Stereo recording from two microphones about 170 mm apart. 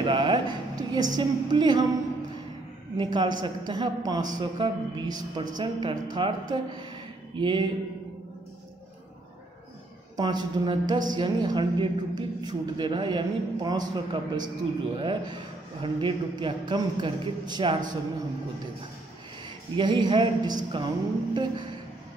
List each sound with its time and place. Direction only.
0.0 s a man's voice: 30° right (ahead or behind)
3.0 s a man's voice: 25° right (ahead or behind)
10.1 s a man's voice: 25° right (ahead or behind)
19.7 s a man's voice: 25° right (ahead or behind)